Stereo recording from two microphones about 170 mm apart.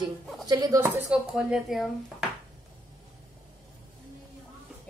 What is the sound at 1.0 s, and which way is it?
A woman's voice, 5° right (ahead or behind).